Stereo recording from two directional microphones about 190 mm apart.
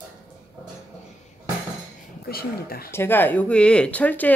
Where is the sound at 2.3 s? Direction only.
50° left (ahead or behind).